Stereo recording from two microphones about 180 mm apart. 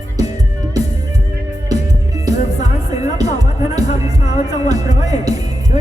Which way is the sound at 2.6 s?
40° left (ahead or behind).